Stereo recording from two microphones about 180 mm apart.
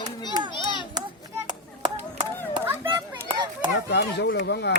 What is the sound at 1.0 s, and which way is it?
Children playing, 20° right (ahead or behind).